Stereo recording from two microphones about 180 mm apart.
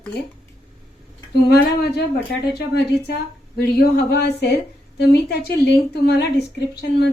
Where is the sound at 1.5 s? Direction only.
65° left (ahead or behind).